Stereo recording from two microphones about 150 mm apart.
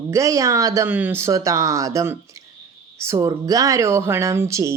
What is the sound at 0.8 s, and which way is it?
Speech, 10° right (ahead or behind).